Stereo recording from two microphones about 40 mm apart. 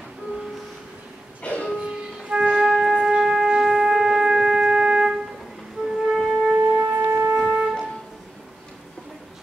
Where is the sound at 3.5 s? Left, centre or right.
Centre.